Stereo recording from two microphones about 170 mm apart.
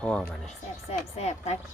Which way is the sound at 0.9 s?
40° left (ahead or behind).